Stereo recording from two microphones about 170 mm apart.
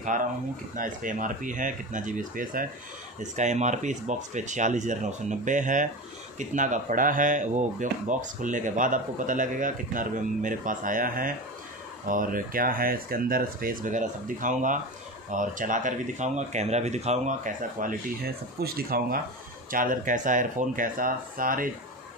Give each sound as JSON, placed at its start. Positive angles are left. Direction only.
{"t": 0.0, "sound": "speech", "side_deg": -50}
{"t": 19.7, "sound": "speech", "side_deg": -50}